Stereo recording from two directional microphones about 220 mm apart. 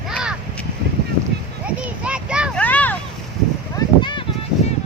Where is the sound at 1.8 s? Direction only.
5° right (ahead or behind).